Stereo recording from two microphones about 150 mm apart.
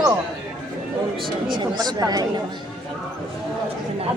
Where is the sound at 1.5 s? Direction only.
30° right (ahead or behind).